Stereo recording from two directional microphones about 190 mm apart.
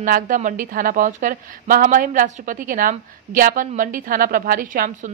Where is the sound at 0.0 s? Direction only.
45° right (ahead or behind).